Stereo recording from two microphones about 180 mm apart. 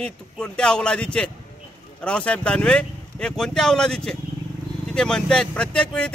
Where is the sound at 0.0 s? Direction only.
5° left (ahead or behind).